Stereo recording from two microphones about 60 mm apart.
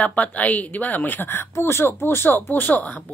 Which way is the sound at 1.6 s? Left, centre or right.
Left.